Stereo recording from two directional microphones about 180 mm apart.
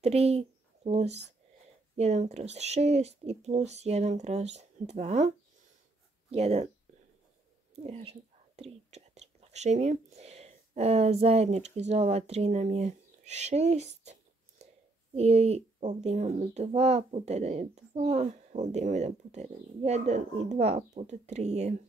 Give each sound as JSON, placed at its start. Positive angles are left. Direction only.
{"t": 0.0, "sound": "speech", "side_deg": -35}
{"t": 6.3, "sound": "speech", "side_deg": -35}
{"t": 7.7, "sound": "speech", "side_deg": -35}
{"t": 15.1, "sound": "speech", "side_deg": -35}